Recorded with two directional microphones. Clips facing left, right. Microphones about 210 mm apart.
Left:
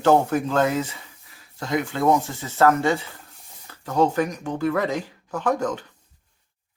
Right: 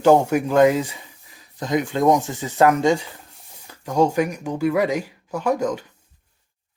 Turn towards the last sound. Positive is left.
turn(degrees=-10)  # may be behind; listen again after turning